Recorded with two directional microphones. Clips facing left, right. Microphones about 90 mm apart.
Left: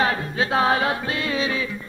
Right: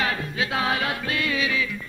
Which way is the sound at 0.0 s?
35° left (ahead or behind).